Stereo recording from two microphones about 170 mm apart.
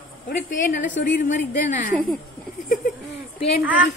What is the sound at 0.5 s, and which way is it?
A woman's voice, 50° left (ahead or behind).